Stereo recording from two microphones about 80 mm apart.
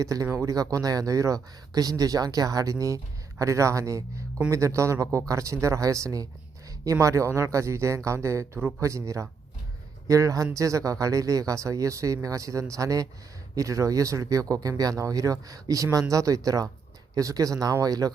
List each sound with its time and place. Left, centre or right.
0.0 s speech: right